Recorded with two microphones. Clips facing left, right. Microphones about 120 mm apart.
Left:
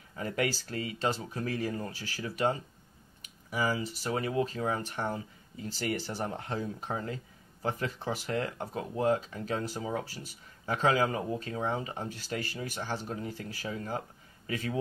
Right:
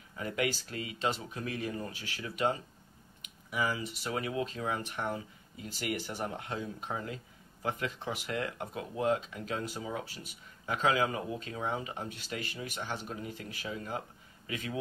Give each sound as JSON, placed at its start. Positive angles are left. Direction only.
{"t": 0.2, "sound": "speech", "side_deg": 35}